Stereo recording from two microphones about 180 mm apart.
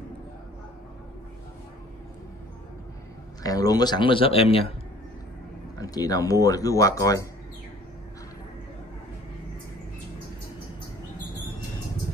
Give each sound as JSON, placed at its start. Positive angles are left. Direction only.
{"t": 3.4, "sound": "speech", "side_deg": 20}
{"t": 5.8, "sound": "speech", "side_deg": 20}